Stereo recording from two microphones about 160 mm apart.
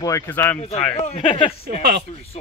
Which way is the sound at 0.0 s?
15° left (ahead or behind).